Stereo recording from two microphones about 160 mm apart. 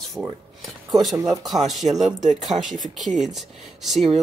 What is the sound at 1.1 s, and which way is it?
Speech, 20° right (ahead or behind).